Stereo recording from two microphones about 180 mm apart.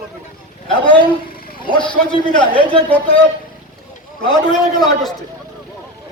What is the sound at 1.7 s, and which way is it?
Speech, 25° left (ahead or behind).